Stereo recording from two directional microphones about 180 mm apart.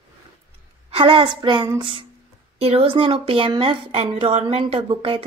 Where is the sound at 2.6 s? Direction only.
35° right (ahead or behind).